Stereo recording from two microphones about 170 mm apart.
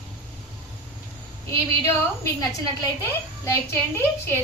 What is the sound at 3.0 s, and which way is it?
Speech, 15° left (ahead or behind).